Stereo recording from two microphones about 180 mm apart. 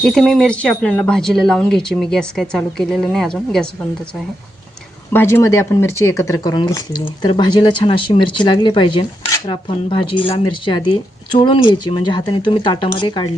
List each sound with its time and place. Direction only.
0.0 s speech: centre (ahead or behind)
5.1 s speech: 15° left (ahead or behind)